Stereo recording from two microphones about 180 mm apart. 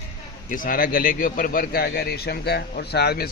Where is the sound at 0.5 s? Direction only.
50° left (ahead or behind).